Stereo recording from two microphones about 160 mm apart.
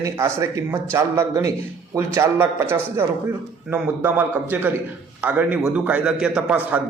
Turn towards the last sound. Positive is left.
turn(degrees=-10)  # may be behind; listen again after turning